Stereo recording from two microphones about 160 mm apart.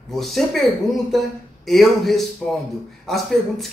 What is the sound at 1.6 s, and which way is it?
Speech, centre (ahead or behind).